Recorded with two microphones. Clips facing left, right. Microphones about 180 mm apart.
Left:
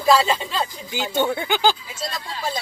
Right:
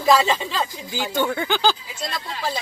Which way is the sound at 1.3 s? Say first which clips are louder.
Left 1 dB; 10° left (ahead or behind).